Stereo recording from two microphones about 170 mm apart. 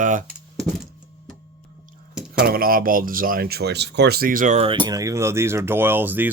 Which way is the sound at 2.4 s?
60° right (ahead or behind).